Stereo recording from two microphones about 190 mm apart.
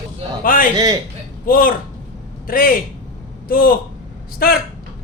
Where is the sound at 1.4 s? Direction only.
50° left (ahead or behind).